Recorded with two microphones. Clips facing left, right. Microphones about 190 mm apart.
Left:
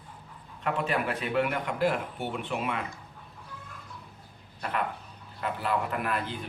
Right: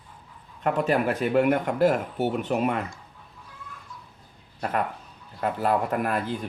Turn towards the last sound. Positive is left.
turn(degrees=-45)  # may be behind; listen again after turning